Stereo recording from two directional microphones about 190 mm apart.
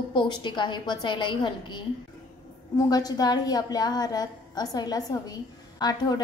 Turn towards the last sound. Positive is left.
turn(degrees=20)  # may be behind; listen again after turning